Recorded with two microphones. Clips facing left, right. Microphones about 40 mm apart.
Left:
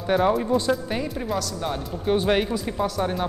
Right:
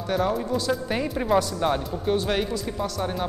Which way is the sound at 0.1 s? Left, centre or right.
Centre.